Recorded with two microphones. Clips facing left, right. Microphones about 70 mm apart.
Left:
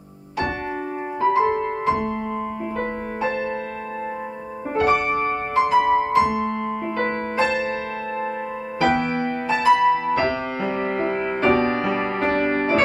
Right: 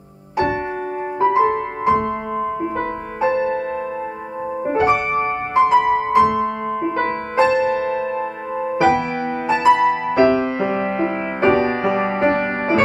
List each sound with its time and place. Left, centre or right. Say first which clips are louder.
1.2 s music: right 3 dB; right
3.2 s music: right 7 dB; right
4.7 s music: right 1 dB; right
5.8 s music: right 1 dB; centre
6.1 s music: right 4 dB; right
9.5 s music: right 2 dB; right